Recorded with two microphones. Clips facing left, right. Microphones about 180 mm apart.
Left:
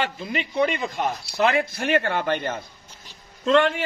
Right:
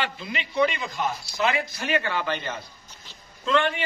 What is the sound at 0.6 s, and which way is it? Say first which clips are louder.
Speech: left 1 dB; 55° left (ahead or behind).